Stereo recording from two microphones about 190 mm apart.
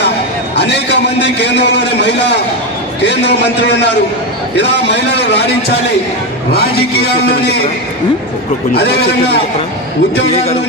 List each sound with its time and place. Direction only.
0.6 s a sound: 65° left (ahead or behind)
3.0 s a man's voice: 65° left (ahead or behind)
6.5 s a man's voice: 55° left (ahead or behind)
8.7 s a man's voice: 60° left (ahead or behind)